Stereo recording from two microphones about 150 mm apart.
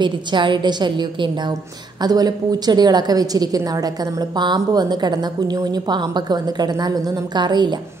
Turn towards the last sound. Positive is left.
turn(degrees=-30)  # may be behind; listen again after turning